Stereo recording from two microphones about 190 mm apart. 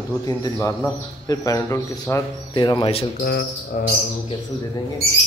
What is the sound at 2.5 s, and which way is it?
Speech, 25° left (ahead or behind).